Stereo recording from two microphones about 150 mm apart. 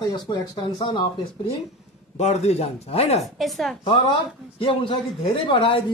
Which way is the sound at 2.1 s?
45° left (ahead or behind).